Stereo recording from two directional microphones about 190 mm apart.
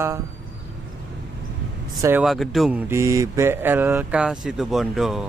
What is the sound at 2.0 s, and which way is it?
Speech, 15° right (ahead or behind).